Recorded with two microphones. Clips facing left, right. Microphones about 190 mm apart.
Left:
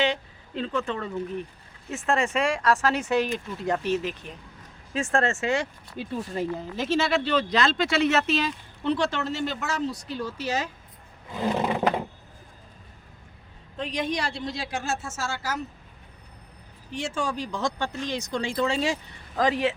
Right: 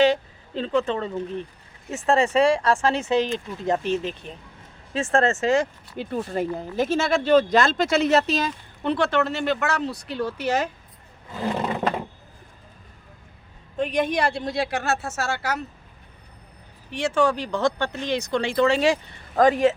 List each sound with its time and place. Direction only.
0.0 s speech: 35° right (ahead or behind)
6.0 s speech: 55° right (ahead or behind)
11.8 s a sound: 10° left (ahead or behind)
13.7 s speech: 55° right (ahead or behind)
16.9 s speech: 70° right (ahead or behind)
19.4 s speech: 50° right (ahead or behind)